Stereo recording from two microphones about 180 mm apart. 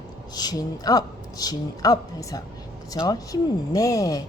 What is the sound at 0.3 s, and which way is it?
Speech, 20° left (ahead or behind).